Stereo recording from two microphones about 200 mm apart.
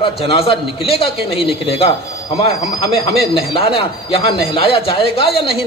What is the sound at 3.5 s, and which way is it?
A man's voice, 25° left (ahead or behind).